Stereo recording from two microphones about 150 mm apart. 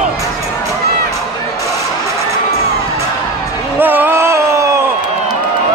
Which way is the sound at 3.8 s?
15° right (ahead or behind).